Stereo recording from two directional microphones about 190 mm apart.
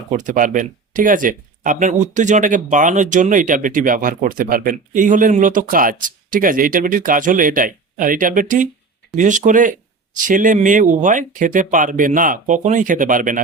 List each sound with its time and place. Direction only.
0.1 s speech: 40° right (ahead or behind)